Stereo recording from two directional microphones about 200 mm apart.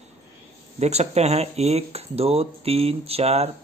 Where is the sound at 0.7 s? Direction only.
35° right (ahead or behind).